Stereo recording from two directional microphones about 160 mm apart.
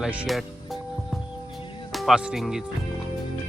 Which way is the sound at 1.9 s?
Centre (ahead or behind).